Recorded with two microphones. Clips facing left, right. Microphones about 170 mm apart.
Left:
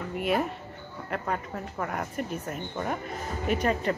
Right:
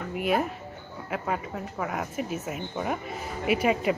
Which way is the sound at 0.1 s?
Centre (ahead or behind).